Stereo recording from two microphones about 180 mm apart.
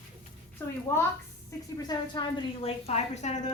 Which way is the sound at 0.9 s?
15° left (ahead or behind).